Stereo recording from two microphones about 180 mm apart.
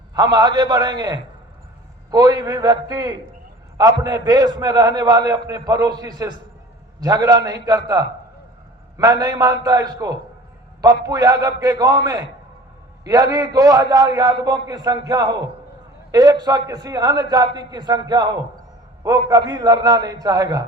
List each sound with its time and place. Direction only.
0.1 s a man's voice: 20° right (ahead or behind)